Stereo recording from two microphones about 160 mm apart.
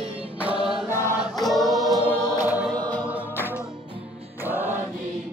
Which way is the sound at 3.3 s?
15° left (ahead or behind).